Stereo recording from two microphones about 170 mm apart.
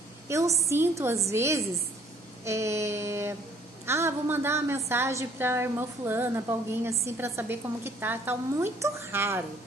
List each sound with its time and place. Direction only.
0.6 s a woman's voice: 15° right (ahead or behind)